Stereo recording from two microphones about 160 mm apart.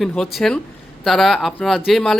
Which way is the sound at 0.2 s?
Centre (ahead or behind).